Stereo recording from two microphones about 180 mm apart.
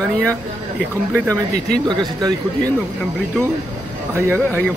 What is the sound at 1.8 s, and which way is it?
Speech, 20° right (ahead or behind).